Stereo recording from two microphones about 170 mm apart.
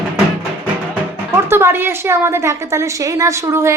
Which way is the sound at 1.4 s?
15° right (ahead or behind).